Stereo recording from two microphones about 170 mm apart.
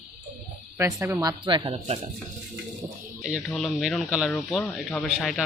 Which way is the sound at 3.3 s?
Centre (ahead or behind).